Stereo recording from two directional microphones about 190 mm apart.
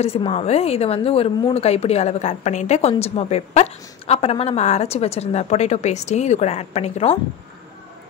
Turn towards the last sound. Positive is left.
turn(degrees=35)  # may be behind; listen again after turning